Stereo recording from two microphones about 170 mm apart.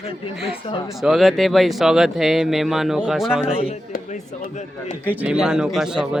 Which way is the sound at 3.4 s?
35° left (ahead or behind).